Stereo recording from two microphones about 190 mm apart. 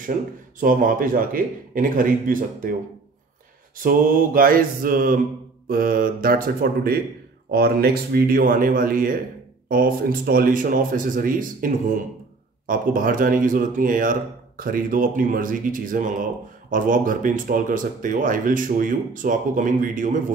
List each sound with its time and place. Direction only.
0.6 s speech: 45° right (ahead or behind)
3.8 s speech: 45° right (ahead or behind)